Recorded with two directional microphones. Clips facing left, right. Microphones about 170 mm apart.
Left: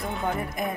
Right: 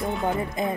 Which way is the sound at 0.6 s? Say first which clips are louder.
Right 4 dB; 25° right (ahead or behind).